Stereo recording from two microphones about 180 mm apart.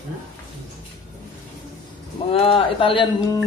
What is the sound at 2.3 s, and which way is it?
Speech, 30° left (ahead or behind).